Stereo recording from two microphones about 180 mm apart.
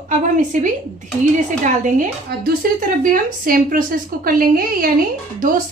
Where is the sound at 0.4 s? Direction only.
45° right (ahead or behind).